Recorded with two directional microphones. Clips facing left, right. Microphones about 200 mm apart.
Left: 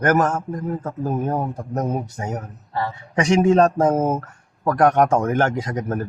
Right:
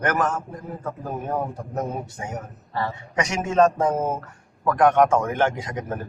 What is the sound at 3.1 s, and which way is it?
Speech, 30° left (ahead or behind).